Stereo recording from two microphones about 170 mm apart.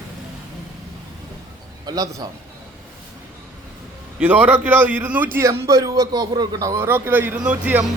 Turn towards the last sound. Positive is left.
turn(degrees=-10)  # may be behind; listen again after turning